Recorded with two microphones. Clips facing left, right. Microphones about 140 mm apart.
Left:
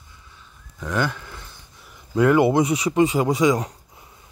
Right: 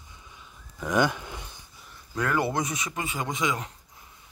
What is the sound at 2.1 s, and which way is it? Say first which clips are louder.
Speech: left 10 dB; 20° left (ahead or behind).